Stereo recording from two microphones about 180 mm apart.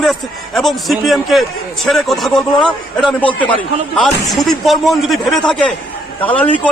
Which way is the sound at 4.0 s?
Centre (ahead or behind).